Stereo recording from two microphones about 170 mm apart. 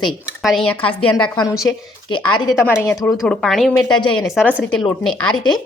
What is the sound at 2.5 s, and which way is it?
Speech, 10° left (ahead or behind).